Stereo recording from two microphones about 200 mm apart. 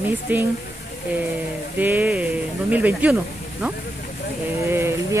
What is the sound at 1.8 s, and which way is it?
Speech, 10° right (ahead or behind).